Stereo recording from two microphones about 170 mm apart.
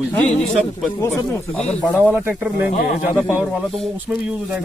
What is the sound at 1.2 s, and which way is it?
Speech, 10° left (ahead or behind).